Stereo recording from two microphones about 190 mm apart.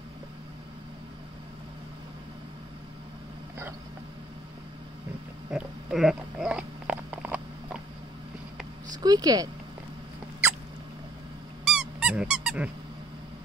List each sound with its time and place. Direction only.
5.5 s a sound: 5° right (ahead or behind)
8.9 s speech: 20° right (ahead or behind)
11.6 s squeak: 5° right (ahead or behind)